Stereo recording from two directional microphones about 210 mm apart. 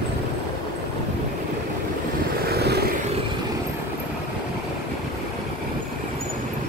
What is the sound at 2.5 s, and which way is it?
Vehicle, 50° right (ahead or behind).